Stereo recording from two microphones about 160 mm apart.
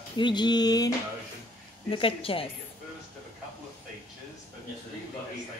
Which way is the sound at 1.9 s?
35° left (ahead or behind).